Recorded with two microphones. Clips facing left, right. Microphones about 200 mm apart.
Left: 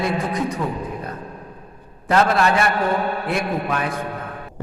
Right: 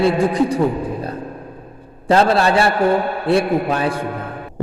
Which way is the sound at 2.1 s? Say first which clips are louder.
Right 3 dB; 30° right (ahead or behind).